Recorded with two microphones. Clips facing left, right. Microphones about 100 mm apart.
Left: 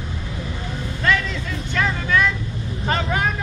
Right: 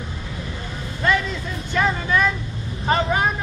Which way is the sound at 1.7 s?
15° right (ahead or behind).